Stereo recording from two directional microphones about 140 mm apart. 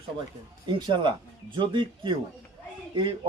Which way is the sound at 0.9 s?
35° right (ahead or behind).